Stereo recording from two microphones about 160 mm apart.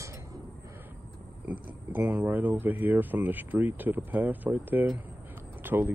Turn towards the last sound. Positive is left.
turn(degrees=-15)  # may be behind; listen again after turning